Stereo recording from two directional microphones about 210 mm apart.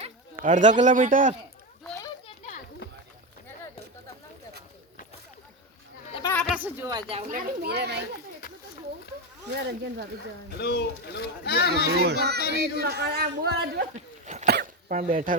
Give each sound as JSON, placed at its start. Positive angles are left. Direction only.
{"t": 0.0, "sound": "speech", "side_deg": -35}
{"t": 6.2, "sound": "a sound", "side_deg": 5}
{"t": 6.6, "sound": "speech", "side_deg": -10}
{"t": 6.9, "sound": "a man's voice", "side_deg": -30}
{"t": 10.6, "sound": "speech", "side_deg": 50}
{"t": 11.7, "sound": "a man's voice", "side_deg": -50}
{"t": 13.9, "sound": "dog", "side_deg": -35}
{"t": 14.4, "sound": "dog", "side_deg": -45}